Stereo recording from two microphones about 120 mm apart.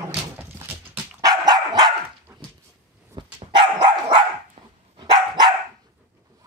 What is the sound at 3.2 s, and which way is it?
Dog, 45° right (ahead or behind).